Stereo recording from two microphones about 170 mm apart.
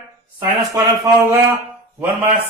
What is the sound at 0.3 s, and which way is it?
Speech, 20° right (ahead or behind).